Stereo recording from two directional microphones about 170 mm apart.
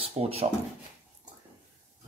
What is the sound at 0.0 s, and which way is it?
Speech, 35° right (ahead or behind).